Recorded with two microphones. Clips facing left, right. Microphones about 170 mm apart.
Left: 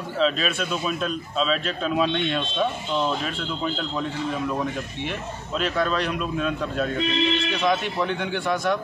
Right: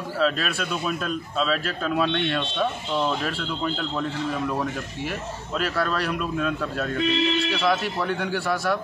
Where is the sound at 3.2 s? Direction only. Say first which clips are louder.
Even; centre (ahead or behind).